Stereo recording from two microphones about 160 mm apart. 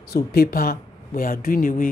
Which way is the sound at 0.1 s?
70° left (ahead or behind).